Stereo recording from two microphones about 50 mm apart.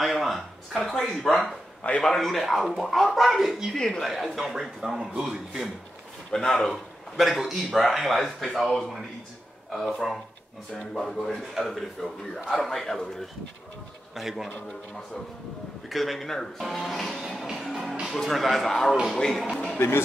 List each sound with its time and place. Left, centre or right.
0.0 s speech: centre
1.8 s a man's voice: left
2.0 s speech: centre
3.7 s speech: centre
4.1 s a man's voice: centre
6.3 s speech: centre
7.2 s speech: centre
10.8 s speech: centre
11.1 s speech: centre
15.9 s speech: centre
18.9 s speech: centre
19.1 s speech: centre
19.8 s speech: left